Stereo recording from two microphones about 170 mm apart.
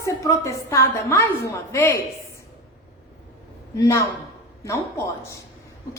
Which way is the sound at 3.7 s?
20° left (ahead or behind).